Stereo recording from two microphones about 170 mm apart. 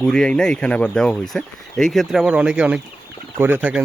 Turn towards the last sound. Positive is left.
turn(degrees=-10)  # may be behind; listen again after turning